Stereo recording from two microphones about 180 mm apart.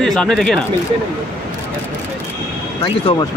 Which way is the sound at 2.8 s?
25° left (ahead or behind).